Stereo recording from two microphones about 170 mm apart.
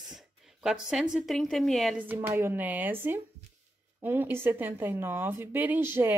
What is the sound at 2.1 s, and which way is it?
A woman's voice, 10° right (ahead or behind).